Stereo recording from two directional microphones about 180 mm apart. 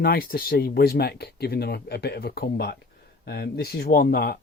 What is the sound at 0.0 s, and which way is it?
Speech, 55° left (ahead or behind).